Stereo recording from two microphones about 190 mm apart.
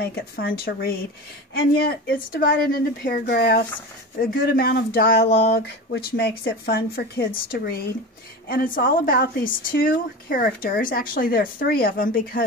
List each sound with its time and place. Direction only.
0.0 s a woman's voice: 55° left (ahead or behind)